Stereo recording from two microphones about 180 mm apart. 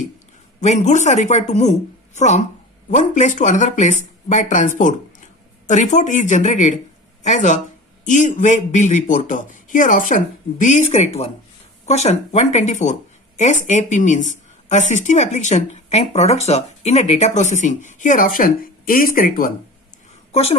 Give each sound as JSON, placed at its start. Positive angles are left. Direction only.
{"t": 0.6, "sound": "speech", "side_deg": 40}